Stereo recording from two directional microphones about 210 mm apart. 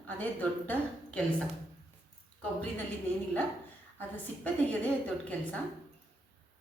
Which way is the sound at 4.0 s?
5° left (ahead or behind).